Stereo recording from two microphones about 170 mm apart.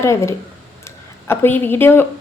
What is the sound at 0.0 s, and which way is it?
A woman's voice, 15° left (ahead or behind).